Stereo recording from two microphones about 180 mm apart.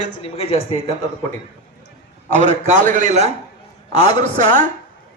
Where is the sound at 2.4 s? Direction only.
40° right (ahead or behind).